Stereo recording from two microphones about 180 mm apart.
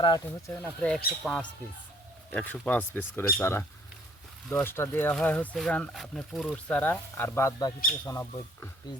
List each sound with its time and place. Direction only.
0.0 s speech: 25° left (ahead or behind)
0.6 s speech: 5° left (ahead or behind)